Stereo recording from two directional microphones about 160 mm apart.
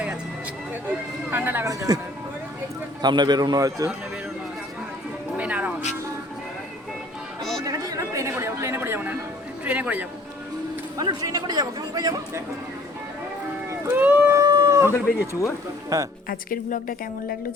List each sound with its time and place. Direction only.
1.3 s speech: 10° right (ahead or behind)
3.0 s speech: 25° right (ahead or behind)
5.4 s music: 10° right (ahead or behind)
7.6 s chatter: 20° right (ahead or behind)
9.6 s a man's voice: 10° right (ahead or behind)
10.9 s speech: 20° right (ahead or behind)
13.7 s a sound: 10° right (ahead or behind)
15.3 s speech: 20° left (ahead or behind)
15.9 s speech: 20° right (ahead or behind)
16.3 s a woman's voice: 65° left (ahead or behind)